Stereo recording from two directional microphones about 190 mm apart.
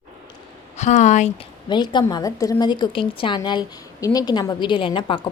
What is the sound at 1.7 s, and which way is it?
A woman's voice, 25° left (ahead or behind).